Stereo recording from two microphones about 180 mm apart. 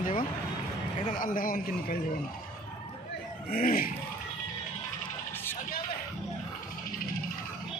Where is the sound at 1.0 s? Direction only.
50° left (ahead or behind).